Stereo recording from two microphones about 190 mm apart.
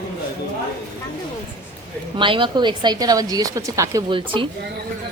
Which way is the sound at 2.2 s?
25° right (ahead or behind).